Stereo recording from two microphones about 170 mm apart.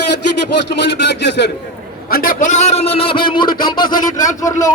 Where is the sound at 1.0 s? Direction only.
90° left.